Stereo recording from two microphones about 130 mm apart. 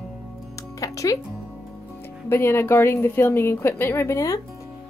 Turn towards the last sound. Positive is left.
turn(degrees=25)  # may be behind; listen again after turning